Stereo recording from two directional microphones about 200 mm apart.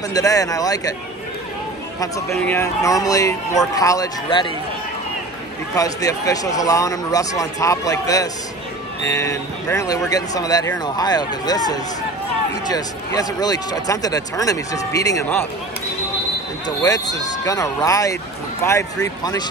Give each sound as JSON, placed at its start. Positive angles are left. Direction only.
{"t": 0.1, "sound": "speech", "side_deg": 15}
{"t": 2.0, "sound": "speech", "side_deg": 15}
{"t": 5.8, "sound": "speech", "side_deg": 15}
{"t": 16.6, "sound": "speech", "side_deg": 20}